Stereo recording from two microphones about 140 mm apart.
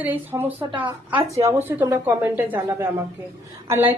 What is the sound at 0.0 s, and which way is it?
A woman's voice, 15° right (ahead or behind).